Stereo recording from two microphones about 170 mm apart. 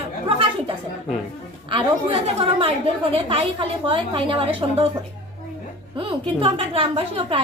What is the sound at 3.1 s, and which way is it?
A woman's voice, 35° right (ahead or behind).